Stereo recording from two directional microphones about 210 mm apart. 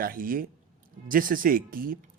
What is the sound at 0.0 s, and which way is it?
A man's voice, 40° right (ahead or behind).